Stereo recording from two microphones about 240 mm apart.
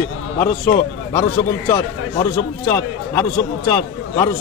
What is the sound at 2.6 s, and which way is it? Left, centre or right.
Speech, centre.